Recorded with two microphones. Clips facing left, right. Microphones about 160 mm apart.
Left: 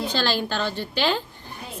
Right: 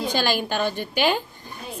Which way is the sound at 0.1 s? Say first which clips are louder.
Right 1 dB; 15° right (ahead or behind).